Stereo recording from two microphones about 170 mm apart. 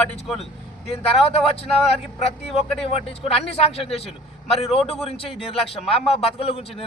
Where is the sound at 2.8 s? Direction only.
35° left (ahead or behind).